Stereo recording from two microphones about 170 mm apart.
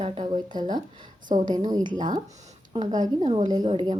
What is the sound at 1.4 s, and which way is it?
A woman's voice, 25° right (ahead or behind).